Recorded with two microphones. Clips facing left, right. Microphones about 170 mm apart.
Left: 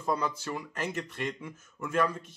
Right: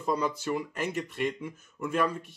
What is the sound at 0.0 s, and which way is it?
Speech, 15° right (ahead or behind).